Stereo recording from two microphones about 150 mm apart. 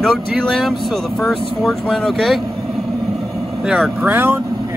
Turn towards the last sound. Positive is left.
turn(degrees=-15)  # may be behind; listen again after turning